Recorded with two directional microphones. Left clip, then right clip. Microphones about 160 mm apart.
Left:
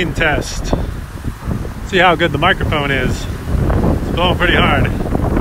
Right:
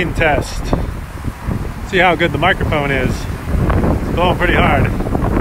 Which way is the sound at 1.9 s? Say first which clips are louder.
Left 1 dB; 5° left (ahead or behind).